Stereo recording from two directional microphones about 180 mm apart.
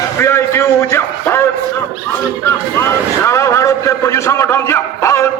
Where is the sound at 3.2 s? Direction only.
15° left (ahead or behind).